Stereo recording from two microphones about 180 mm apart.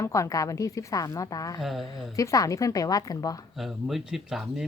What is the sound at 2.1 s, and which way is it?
A woman's voice, 20° left (ahead or behind).